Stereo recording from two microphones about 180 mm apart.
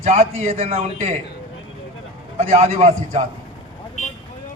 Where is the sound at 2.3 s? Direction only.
35° right (ahead or behind).